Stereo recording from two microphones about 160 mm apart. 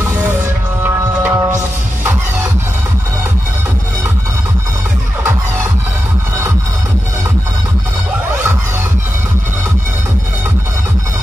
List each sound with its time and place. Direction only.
0.8 s music: 15° right (ahead or behind)